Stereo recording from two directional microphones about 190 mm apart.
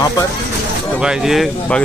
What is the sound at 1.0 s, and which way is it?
Speech, 5° right (ahead or behind).